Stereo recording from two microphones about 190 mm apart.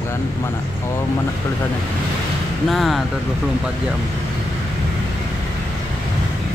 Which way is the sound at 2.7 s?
Centre (ahead or behind).